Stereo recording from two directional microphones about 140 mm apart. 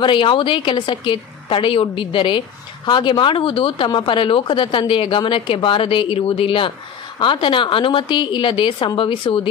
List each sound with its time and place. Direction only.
0.0 s a woman's voice: 35° left (ahead or behind)